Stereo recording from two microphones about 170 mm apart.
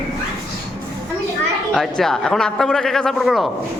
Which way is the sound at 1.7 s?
Centre (ahead or behind).